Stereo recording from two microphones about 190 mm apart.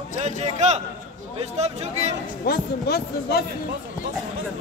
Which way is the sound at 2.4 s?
55° left (ahead or behind).